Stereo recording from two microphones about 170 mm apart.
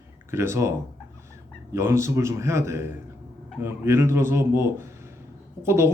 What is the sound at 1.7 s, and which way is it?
A man's voice, 15° right (ahead or behind).